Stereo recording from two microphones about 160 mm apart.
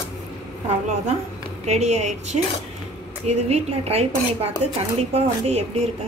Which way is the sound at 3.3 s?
40° right (ahead or behind).